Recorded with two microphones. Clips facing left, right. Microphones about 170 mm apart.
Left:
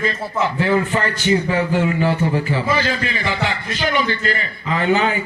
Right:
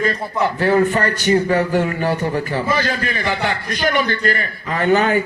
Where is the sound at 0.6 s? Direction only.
45° right (ahead or behind).